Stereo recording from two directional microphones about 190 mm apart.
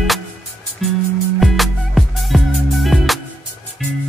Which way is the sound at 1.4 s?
Centre (ahead or behind).